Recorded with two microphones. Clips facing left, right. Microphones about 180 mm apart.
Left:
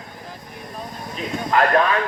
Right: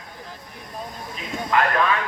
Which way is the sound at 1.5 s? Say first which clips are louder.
Left 2 dB; 40° left (ahead or behind).